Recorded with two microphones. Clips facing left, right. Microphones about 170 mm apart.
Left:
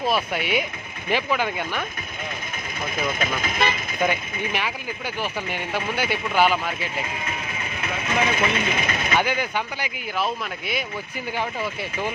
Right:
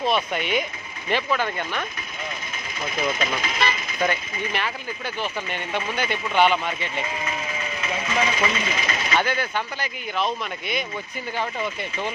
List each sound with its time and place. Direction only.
0.0 s speech: 5° left (ahead or behind)
3.2 s speech: 50° left (ahead or behind)
4.0 s speech: 10° left (ahead or behind)
8.4 s speech: 55° left (ahead or behind)
9.1 s speech: 15° left (ahead or behind)